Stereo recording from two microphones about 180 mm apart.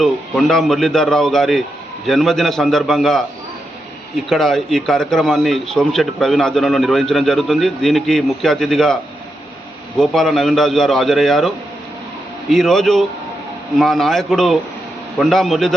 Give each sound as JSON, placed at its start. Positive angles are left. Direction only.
{"t": 0.0, "sound": "a man's voice", "side_deg": 0}
{"t": 4.3, "sound": "a man's voice", "side_deg": 0}
{"t": 10.0, "sound": "a man's voice", "side_deg": 0}